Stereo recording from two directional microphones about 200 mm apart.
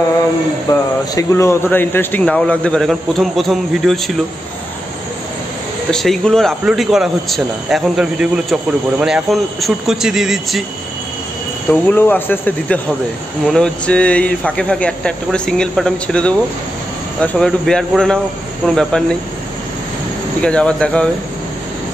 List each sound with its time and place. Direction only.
0.7 s speech: 15° left (ahead or behind)
5.9 s speech: 5° left (ahead or behind)
11.7 s speech: 10° left (ahead or behind)
20.4 s speech: 5° left (ahead or behind)